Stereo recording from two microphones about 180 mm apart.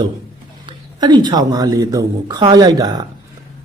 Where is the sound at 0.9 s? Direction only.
25° right (ahead or behind).